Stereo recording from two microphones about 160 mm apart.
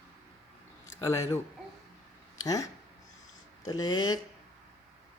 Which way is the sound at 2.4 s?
20° left (ahead or behind).